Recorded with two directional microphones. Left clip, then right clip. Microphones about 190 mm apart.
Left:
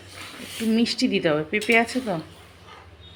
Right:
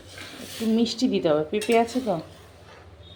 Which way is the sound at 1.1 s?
35° left (ahead or behind).